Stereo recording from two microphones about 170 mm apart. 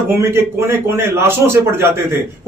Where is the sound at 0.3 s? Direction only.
15° right (ahead or behind).